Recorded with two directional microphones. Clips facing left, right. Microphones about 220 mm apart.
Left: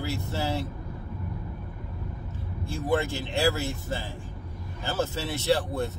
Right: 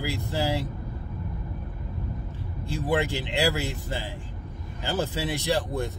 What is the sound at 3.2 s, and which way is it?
Speech, 15° right (ahead or behind).